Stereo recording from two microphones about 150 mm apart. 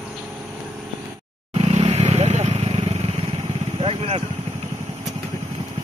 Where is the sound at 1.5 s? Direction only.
45° right (ahead or behind).